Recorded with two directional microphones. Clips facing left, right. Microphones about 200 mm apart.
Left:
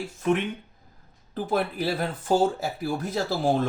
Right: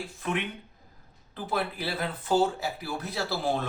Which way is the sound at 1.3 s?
45° left (ahead or behind).